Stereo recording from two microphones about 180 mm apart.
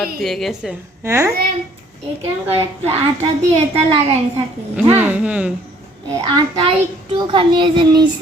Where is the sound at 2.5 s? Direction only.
35° right (ahead or behind).